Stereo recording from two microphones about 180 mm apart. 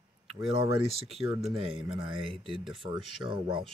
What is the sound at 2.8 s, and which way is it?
Speech, 30° right (ahead or behind).